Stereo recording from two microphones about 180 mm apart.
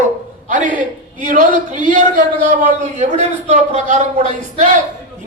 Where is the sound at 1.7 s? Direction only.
45° right (ahead or behind).